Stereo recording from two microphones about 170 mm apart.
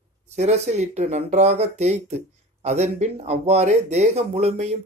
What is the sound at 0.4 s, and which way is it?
Speech, 40° right (ahead or behind).